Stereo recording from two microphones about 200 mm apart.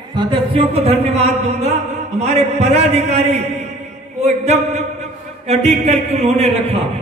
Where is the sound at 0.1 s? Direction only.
25° right (ahead or behind).